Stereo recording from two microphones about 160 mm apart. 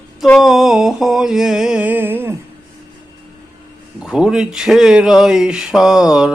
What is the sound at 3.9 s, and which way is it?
Speech, 5° right (ahead or behind).